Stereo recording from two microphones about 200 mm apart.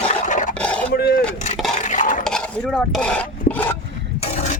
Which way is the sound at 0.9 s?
50° left (ahead or behind).